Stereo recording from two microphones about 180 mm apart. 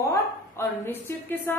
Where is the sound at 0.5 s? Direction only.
10° left (ahead or behind).